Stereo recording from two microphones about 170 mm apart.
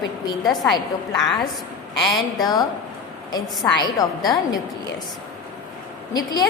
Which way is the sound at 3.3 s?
20° left (ahead or behind).